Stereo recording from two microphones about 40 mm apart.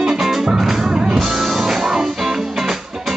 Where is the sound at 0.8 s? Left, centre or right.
Centre.